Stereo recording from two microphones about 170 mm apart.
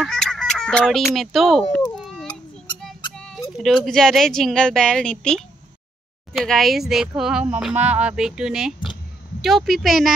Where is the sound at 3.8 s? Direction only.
5° left (ahead or behind).